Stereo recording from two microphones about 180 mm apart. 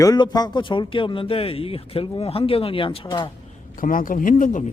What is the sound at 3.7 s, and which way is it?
Speech, 50° left (ahead or behind).